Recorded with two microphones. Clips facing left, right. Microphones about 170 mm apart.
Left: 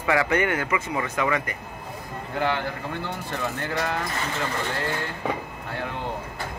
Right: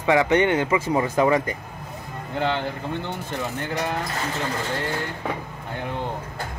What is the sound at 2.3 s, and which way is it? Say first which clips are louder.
Speech: right 1 dB; 20° right (ahead or behind).